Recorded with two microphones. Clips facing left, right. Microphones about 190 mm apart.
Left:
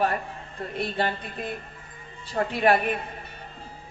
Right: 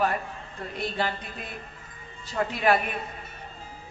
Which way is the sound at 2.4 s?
40° left (ahead or behind).